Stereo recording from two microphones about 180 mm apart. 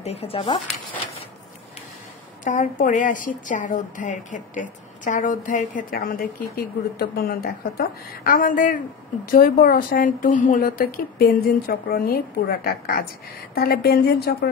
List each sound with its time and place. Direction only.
0.0 s speech: 35° left (ahead or behind)
2.4 s a woman's voice: 45° left (ahead or behind); by 14.5 s 60° left (ahead or behind)